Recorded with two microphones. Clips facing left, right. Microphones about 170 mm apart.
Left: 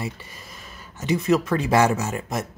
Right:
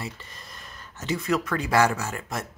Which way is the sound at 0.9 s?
20° left (ahead or behind).